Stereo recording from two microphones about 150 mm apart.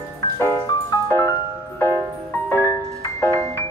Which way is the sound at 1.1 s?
15° left (ahead or behind).